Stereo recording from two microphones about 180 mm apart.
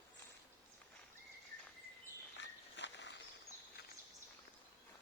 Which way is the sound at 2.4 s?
80° left.